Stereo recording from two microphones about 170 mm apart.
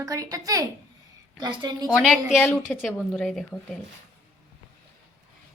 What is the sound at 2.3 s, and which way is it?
A woman's voice, 5° left (ahead or behind).